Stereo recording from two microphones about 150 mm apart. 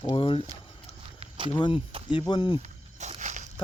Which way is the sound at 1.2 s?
35° right (ahead or behind).